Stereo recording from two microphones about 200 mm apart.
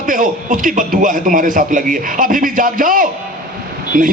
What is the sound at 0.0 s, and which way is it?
A man's voice, 40° right (ahead or behind).